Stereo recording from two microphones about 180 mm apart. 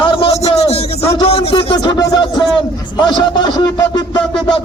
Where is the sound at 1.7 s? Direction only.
20° left (ahead or behind).